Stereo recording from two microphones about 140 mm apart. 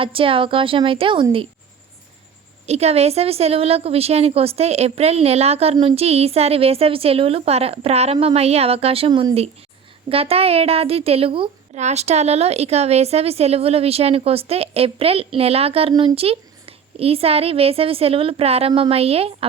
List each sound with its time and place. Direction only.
0.0 s a woman's voice: 40° right (ahead or behind)
2.6 s a woman's voice: 50° right (ahead or behind)
11.7 s a woman's voice: 55° right (ahead or behind)